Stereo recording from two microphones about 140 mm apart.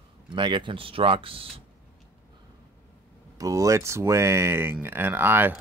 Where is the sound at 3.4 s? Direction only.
25° right (ahead or behind).